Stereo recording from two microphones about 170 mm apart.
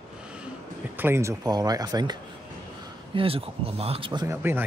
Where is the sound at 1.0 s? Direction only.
15° right (ahead or behind).